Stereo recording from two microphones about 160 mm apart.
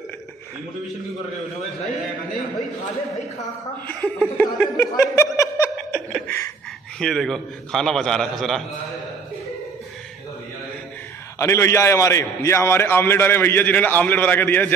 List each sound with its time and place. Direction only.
3.8 s chuckle: 10° left (ahead or behind)
6.1 s a sound: 10° left (ahead or behind)
7.0 s a man's voice: 5° left (ahead or behind)
11.3 s a man's voice: 15° left (ahead or behind)